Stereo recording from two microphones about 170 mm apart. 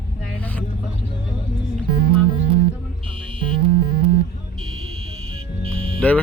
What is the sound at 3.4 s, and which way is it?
Music, 30° right (ahead or behind).